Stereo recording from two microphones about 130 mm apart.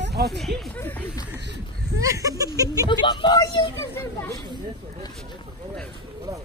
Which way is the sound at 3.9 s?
20° left (ahead or behind).